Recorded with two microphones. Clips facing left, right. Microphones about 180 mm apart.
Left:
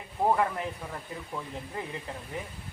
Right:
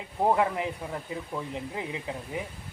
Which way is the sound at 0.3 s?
15° right (ahead or behind).